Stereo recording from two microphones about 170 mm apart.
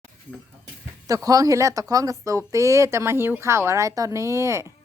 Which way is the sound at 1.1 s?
20° right (ahead or behind).